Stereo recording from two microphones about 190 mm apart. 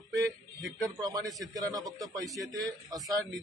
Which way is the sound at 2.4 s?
Centre (ahead or behind).